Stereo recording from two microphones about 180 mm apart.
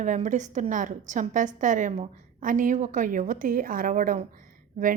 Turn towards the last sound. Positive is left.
turn(degrees=-50)  # may be behind; listen again after turning